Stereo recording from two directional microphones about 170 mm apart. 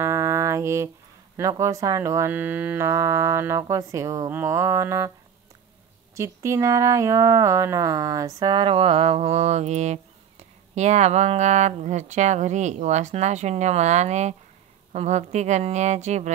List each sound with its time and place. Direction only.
0.0 s music: 15° right (ahead or behind)
1.3 s speech: 20° right (ahead or behind)
6.1 s speech: 15° right (ahead or behind); by 16.3 s 40° right (ahead or behind)